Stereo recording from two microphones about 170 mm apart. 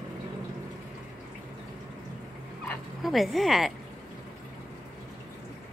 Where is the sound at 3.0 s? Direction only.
Centre (ahead or behind).